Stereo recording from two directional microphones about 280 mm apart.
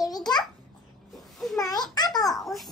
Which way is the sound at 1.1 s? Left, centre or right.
Centre.